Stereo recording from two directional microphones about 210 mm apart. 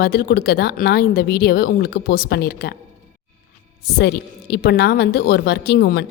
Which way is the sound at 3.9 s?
50° left (ahead or behind).